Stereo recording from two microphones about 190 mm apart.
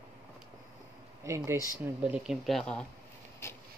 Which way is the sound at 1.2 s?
15° right (ahead or behind).